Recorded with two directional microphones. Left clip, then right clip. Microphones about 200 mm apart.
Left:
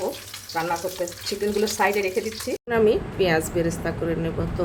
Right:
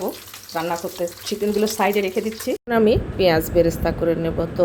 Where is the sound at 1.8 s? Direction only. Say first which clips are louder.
Right 1 dB; 35° right (ahead or behind).